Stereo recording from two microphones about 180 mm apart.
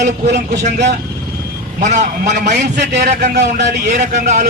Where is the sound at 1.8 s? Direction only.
40° right (ahead or behind).